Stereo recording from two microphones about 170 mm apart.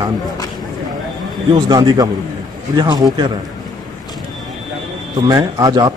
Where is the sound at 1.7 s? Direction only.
25° right (ahead or behind).